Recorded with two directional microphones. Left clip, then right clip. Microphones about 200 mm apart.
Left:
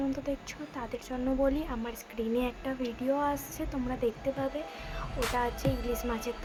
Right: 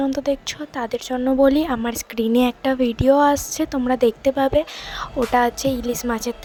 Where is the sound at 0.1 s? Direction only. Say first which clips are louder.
Right 13 dB; 45° right (ahead or behind).